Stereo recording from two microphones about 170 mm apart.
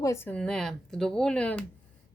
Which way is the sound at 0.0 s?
15° left (ahead or behind).